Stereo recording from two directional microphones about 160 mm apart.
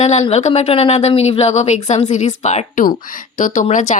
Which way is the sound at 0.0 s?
45° left (ahead or behind).